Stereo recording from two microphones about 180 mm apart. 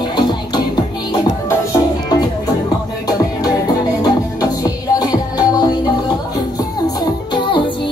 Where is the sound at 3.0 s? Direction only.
20° left (ahead or behind).